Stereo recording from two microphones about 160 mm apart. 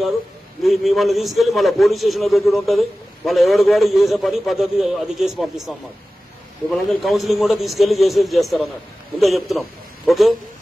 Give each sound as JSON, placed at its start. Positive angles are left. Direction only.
{"t": 0.6, "sound": "a man's voice", "side_deg": 0}